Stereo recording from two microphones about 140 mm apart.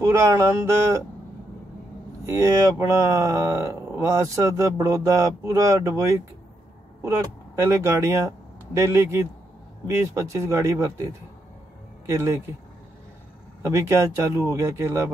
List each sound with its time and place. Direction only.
0.0 s speech: 20° right (ahead or behind)
2.2 s speech: 20° right (ahead or behind)
7.6 s speech: 20° right (ahead or behind)
12.1 s speech: 20° right (ahead or behind)
13.6 s speech: 20° right (ahead or behind)